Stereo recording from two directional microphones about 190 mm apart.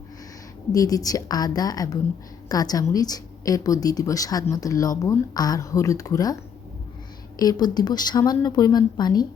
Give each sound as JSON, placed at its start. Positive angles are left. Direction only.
{"t": 0.7, "sound": "speech", "side_deg": 20}
{"t": 7.3, "sound": "speech", "side_deg": 20}